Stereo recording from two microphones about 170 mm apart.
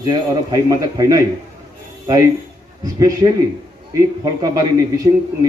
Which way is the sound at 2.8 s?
20° right (ahead or behind).